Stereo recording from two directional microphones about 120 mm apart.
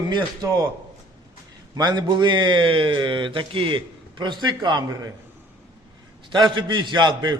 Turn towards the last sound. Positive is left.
turn(degrees=-40)  # may be behind; listen again after turning